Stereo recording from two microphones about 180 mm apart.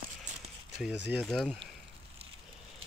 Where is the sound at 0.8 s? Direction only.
5° right (ahead or behind).